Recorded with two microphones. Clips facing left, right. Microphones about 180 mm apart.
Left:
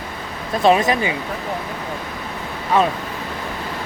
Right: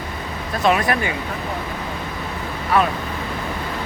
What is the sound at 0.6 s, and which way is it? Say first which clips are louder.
Speech: left 4 dB; 30° left (ahead or behind).